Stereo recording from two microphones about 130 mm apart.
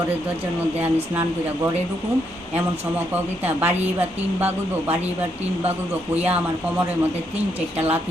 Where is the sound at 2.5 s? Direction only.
15° right (ahead or behind).